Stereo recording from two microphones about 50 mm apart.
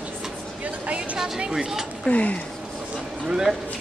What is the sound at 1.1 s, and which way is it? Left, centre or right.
Speech, centre.